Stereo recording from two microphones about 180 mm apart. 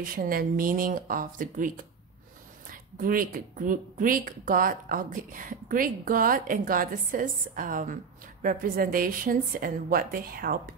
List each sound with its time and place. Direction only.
0.0 s a woman's voice: 55° right (ahead or behind)
3.0 s a woman's voice: 50° right (ahead or behind)